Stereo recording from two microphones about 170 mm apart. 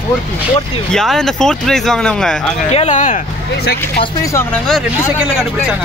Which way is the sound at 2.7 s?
40° left (ahead or behind).